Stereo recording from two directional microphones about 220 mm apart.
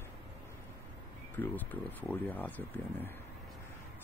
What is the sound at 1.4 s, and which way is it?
Speech, 10° left (ahead or behind).